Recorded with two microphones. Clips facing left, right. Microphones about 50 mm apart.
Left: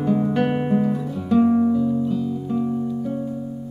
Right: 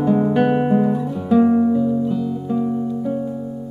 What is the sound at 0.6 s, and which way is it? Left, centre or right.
Guitar, centre.